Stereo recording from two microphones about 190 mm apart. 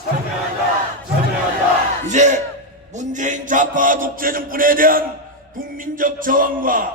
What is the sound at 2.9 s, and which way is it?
Mantra, 40° right (ahead or behind).